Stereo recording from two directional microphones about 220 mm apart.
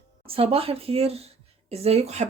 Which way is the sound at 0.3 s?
25° right (ahead or behind).